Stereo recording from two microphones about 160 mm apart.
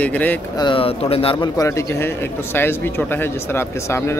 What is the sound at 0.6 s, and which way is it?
Speech, 30° left (ahead or behind).